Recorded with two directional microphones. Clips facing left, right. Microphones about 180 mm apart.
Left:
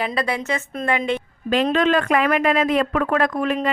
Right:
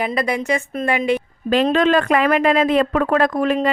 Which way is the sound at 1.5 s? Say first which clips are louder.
Right 3 dB; 35° right (ahead or behind).